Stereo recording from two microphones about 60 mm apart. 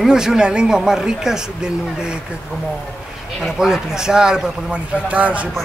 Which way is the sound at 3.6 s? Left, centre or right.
Centre.